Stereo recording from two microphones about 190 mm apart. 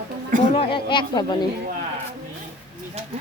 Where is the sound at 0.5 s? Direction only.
25° left (ahead or behind).